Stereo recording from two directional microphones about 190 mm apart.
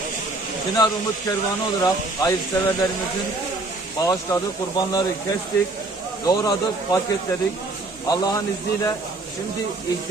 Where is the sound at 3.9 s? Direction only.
20° left (ahead or behind).